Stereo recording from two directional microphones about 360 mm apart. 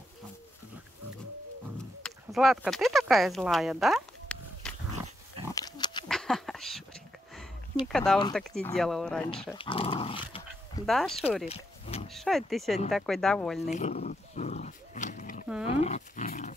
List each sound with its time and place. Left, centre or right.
2.0 s speech: centre
5.5 s pig: centre
6.0 s a sound: centre
7.8 s speech: centre
9.6 s speech: centre
10.9 s speech: centre
11.4 s roaring cats: centre
12.1 s speech: centre
13.7 s dog: centre
15.6 s a sound: centre